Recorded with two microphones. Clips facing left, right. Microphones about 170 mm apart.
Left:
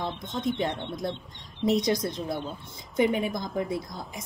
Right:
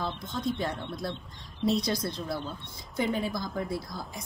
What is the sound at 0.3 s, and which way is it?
A woman's voice, 20° left (ahead or behind).